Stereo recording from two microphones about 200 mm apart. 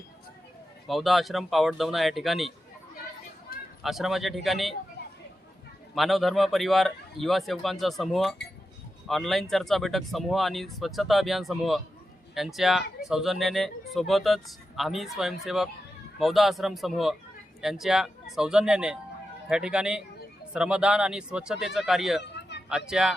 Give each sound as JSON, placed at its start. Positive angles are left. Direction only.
{"t": 0.9, "sound": "speech", "side_deg": 0}
{"t": 3.5, "sound": "a sound", "side_deg": 45}
{"t": 3.8, "sound": "speech", "side_deg": 0}
{"t": 5.9, "sound": "speech", "side_deg": 0}
{"t": 22.2, "sound": "a sound", "side_deg": 60}
{"t": 22.9, "sound": "speech", "side_deg": -5}